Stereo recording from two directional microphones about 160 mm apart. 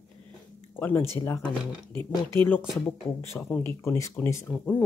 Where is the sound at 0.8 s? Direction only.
10° left (ahead or behind).